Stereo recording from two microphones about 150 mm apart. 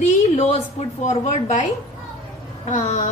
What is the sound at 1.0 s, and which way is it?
Speech, 50° left (ahead or behind).